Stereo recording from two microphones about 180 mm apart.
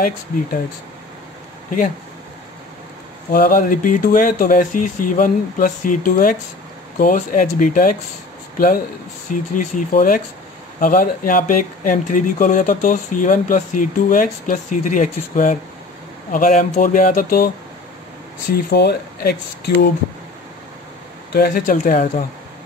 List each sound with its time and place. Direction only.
3.3 s speech: 55° left (ahead or behind)
18.5 s speech: 60° left (ahead or behind)
21.3 s speech: 55° left (ahead or behind)